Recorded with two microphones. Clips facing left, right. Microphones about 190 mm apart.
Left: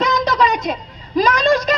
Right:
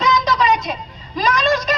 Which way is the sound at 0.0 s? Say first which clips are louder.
Left 1 dB; 55° left (ahead or behind).